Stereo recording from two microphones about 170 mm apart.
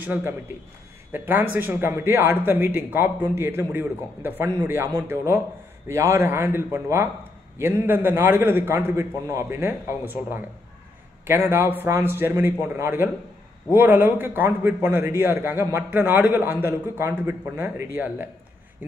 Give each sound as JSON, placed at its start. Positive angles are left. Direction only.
{"t": 0.0, "sound": "a man's voice", "side_deg": -10}